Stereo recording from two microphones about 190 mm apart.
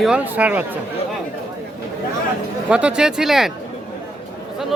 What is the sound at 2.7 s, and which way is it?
Speech, 5° right (ahead or behind).